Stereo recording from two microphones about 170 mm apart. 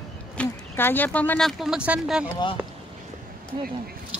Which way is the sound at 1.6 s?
5° right (ahead or behind).